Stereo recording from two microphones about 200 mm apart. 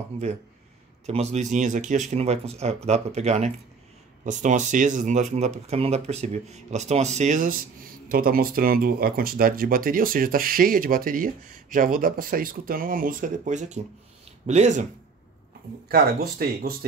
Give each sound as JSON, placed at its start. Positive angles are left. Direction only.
{"t": 1.0, "sound": "speech", "side_deg": -35}
{"t": 15.9, "sound": "speech", "side_deg": -50}